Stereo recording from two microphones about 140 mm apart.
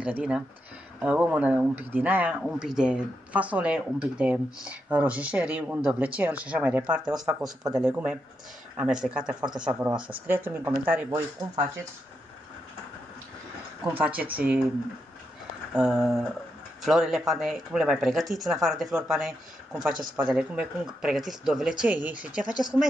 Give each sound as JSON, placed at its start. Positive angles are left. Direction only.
{"t": 0.0, "sound": "speech", "side_deg": -10}
{"t": 9.8, "sound": "speech", "side_deg": -35}
{"t": 10.1, "sound": "speech", "side_deg": -15}
{"t": 13.9, "sound": "speech", "side_deg": -10}
{"t": 15.7, "sound": "speech", "side_deg": -5}